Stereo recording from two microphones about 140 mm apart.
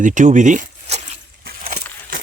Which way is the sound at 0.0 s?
60° right (ahead or behind).